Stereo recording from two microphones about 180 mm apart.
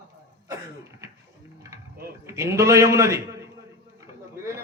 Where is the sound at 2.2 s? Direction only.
15° right (ahead or behind).